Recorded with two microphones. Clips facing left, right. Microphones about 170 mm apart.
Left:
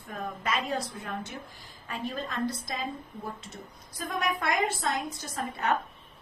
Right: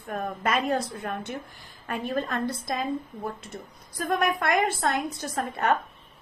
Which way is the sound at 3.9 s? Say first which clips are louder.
Right 6 dB; 60° right (ahead or behind).